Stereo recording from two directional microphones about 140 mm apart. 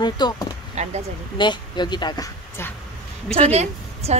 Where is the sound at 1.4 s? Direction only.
30° left (ahead or behind).